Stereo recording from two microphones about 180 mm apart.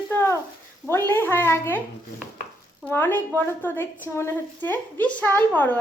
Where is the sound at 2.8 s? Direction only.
10° left (ahead or behind).